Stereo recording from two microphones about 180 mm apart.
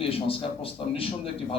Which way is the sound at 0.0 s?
30° left (ahead or behind).